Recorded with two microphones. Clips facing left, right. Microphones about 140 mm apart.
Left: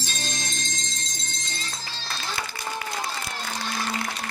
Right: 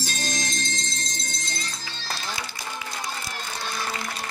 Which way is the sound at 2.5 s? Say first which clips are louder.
Left 3 dB; 55° left (ahead or behind).